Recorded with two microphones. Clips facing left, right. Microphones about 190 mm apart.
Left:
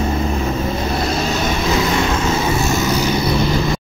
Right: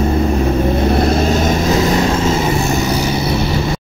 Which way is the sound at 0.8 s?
55° right (ahead or behind).